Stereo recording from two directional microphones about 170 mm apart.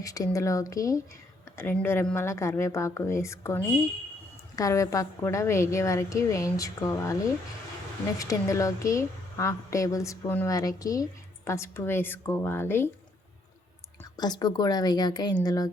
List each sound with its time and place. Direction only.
0.0 s a woman's voice: 20° left (ahead or behind)
14.2 s a woman's voice: 25° left (ahead or behind)